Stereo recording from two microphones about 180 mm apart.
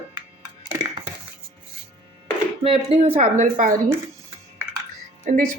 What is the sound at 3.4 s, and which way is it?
Speech, 45° right (ahead or behind).